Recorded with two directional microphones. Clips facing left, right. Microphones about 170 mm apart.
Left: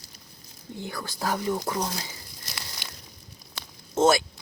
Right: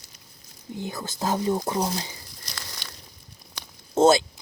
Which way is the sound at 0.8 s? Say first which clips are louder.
Right 2 dB; 20° right (ahead or behind).